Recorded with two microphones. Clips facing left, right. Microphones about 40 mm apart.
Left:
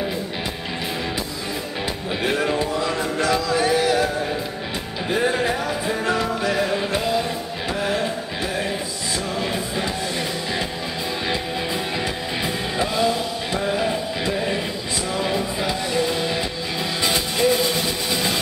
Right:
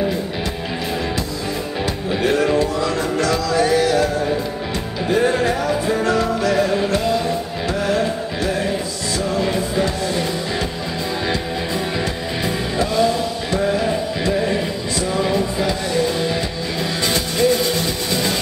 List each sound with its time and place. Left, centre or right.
2.2 s music: centre
5.1 s music: centre
9.4 s music: centre
12.7 s a sound: centre
15.1 s music: centre